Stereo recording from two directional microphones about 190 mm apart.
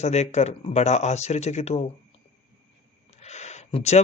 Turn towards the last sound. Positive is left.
turn(degrees=35)  # may be behind; listen again after turning